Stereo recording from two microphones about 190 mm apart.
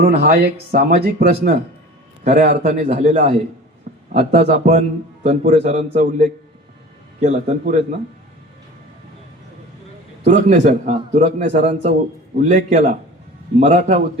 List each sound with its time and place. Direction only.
0.0 s speech: 45° right (ahead or behind)
2.2 s a man's voice: 35° right (ahead or behind)
10.2 s a man's voice: 40° right (ahead or behind)